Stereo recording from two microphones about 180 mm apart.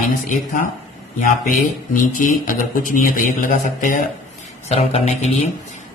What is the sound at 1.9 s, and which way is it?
Speech, 50° left (ahead or behind).